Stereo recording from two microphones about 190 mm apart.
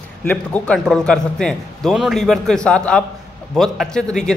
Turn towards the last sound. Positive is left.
turn(degrees=5)  # may be behind; listen again after turning